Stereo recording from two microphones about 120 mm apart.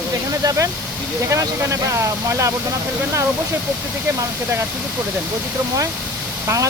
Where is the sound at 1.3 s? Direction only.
25° right (ahead or behind).